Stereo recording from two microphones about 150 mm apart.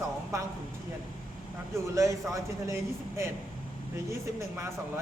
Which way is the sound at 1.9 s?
20° right (ahead or behind).